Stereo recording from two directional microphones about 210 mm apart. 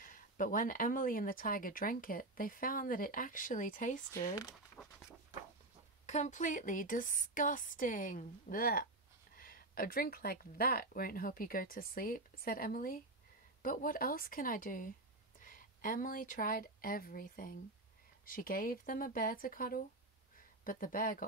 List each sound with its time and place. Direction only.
0.0 s speech: 40° left (ahead or behind)
4.8 s a sound: 5° left (ahead or behind)
6.0 s speech: 35° left (ahead or behind)